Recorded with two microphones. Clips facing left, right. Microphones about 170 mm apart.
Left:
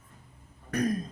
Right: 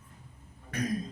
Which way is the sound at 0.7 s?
45° left (ahead or behind).